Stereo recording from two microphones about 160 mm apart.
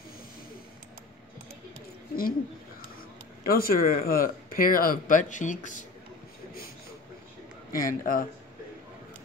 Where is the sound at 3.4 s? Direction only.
65° left (ahead or behind).